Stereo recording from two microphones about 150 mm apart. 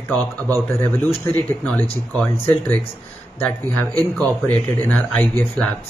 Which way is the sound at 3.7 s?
15° left (ahead or behind).